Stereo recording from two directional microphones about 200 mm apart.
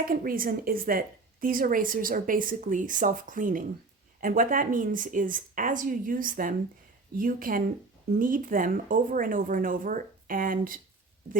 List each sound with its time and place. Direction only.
0.1 s a woman's voice: 45° right (ahead or behind)